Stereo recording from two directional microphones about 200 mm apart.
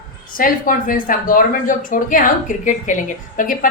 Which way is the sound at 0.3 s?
45° left (ahead or behind).